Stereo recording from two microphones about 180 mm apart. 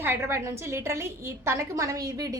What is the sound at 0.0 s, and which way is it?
A woman's voice, 15° right (ahead or behind).